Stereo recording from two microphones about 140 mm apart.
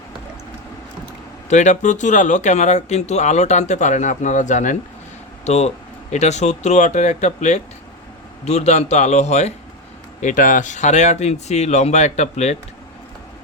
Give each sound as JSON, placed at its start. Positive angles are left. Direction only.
{"t": 1.5, "sound": "speech", "side_deg": 60}
{"t": 5.5, "sound": "speech", "side_deg": 55}
{"t": 10.2, "sound": "speech", "side_deg": 65}